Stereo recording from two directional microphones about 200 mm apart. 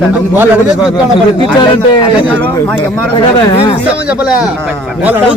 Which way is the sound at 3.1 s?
25° left (ahead or behind).